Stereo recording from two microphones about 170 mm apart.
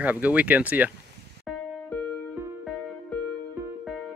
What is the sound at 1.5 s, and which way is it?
Music, centre (ahead or behind).